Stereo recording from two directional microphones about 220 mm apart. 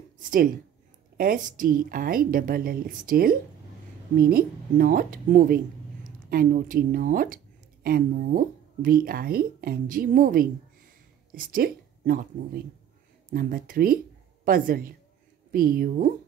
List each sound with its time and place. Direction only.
1.1 s speech: 40° right (ahead or behind)
13.3 s speech: 40° right (ahead or behind)